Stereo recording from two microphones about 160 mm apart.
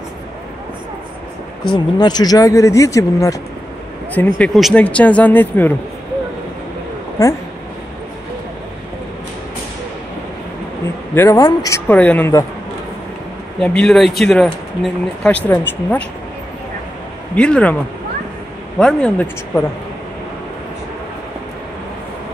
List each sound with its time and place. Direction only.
1.7 s speech: 25° left (ahead or behind)
4.4 s speech: 5° left (ahead or behind)
11.1 s speech: 20° left (ahead or behind)
11.9 s speech: 10° left (ahead or behind)
13.6 s speech: 5° left (ahead or behind)
17.4 s speech: 10° left (ahead or behind)
18.8 s speech: 5° left (ahead or behind)